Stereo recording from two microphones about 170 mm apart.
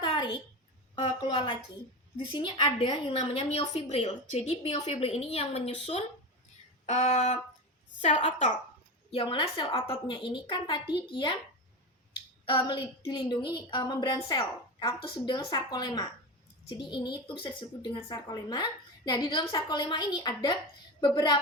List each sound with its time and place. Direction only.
0.0 s a sound: 30° left (ahead or behind)
0.9 s a woman's voice: 25° left (ahead or behind); by 8.5 s 45° left (ahead or behind)
9.1 s a woman's voice: 30° left (ahead or behind)
12.5 s a woman's voice: 30° left (ahead or behind)